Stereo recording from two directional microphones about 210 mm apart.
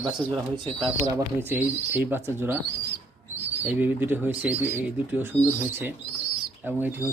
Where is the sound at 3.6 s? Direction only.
10° right (ahead or behind).